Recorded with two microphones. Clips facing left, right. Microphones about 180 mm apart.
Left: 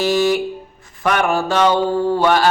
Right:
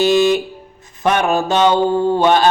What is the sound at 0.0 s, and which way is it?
Mantra, 20° right (ahead or behind).